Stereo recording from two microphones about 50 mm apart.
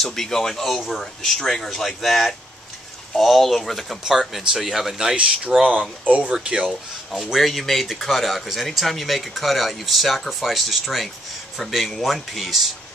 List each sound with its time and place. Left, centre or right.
0.0 s speech: centre
5.6 s speech: right
6.3 s speech: centre
7.3 s speech: centre